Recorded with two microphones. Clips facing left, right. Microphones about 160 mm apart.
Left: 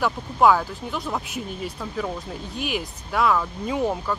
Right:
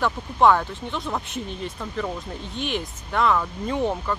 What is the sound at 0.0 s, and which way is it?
Speech, 5° left (ahead or behind).